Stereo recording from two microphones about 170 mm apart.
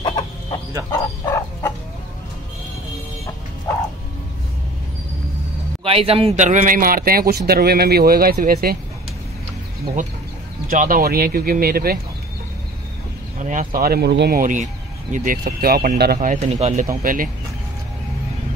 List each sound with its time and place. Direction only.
0.0 s chicken: 25° left (ahead or behind)
0.9 s bow-wow: 15° left (ahead or behind)
5.9 s a man's voice: 35° right (ahead or behind); by 8.7 s 60° right (ahead or behind)
10.7 s a man's voice: 55° right (ahead or behind)
13.4 s a man's voice: 50° right (ahead or behind); by 14.4 s 75° right (ahead or behind)
14.4 s a man's voice: 50° right (ahead or behind)
17.0 s a man's voice: 55° right (ahead or behind)